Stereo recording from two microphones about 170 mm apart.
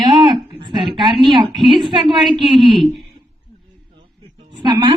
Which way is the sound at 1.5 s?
Centre (ahead or behind).